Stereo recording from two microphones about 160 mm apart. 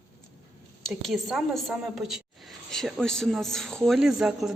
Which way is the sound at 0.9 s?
Centre (ahead or behind).